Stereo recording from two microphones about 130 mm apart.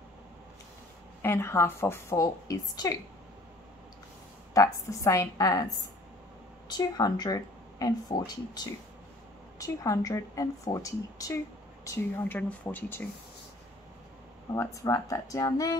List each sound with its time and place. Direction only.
1.2 s a woman's voice: 20° left (ahead or behind)
4.6 s a woman's voice: 25° left (ahead or behind)
6.8 s speech: 30° left (ahead or behind)
9.6 s a woman's voice: 25° left (ahead or behind)
14.5 s a woman's voice: 25° left (ahead or behind)